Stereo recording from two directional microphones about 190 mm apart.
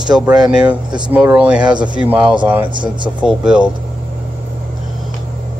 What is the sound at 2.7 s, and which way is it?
Speech, 25° right (ahead or behind).